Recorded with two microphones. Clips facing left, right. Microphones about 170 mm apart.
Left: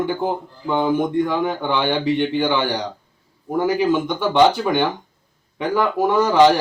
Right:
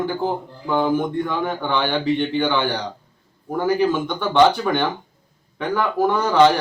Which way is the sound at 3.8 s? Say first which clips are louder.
Left 1 dB; 15° left (ahead or behind).